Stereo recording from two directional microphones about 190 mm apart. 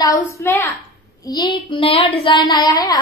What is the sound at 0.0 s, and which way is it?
A woman's voice, 15° left (ahead or behind).